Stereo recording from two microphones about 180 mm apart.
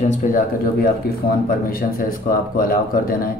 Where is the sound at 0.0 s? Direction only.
45° left (ahead or behind).